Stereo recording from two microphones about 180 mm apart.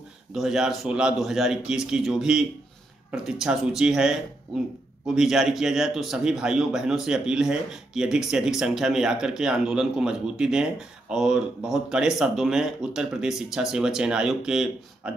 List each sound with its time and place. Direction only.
0.3 s a man's voice: centre (ahead or behind)